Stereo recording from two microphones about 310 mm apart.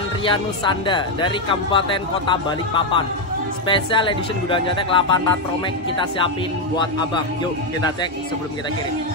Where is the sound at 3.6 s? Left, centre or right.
Centre.